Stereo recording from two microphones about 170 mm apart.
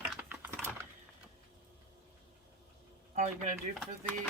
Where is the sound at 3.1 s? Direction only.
45° right (ahead or behind).